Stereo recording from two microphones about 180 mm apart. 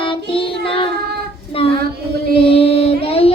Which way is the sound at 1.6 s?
30° left (ahead or behind).